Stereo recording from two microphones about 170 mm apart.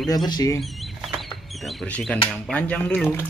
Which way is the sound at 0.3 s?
20° left (ahead or behind).